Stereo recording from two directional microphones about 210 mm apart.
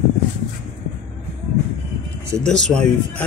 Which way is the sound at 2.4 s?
5° left (ahead or behind).